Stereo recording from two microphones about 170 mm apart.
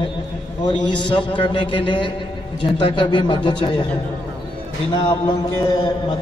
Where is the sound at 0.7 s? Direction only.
25° left (ahead or behind).